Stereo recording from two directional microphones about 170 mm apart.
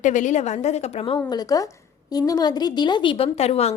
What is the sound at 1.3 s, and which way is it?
A woman's voice, 20° left (ahead or behind).